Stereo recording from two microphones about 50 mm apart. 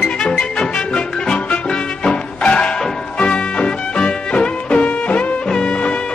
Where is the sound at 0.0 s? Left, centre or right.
Centre.